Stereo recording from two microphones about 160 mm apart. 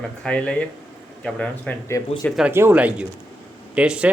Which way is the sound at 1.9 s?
20° left (ahead or behind).